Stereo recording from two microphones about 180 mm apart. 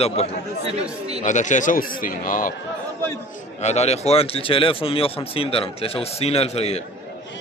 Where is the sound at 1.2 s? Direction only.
45° left (ahead or behind).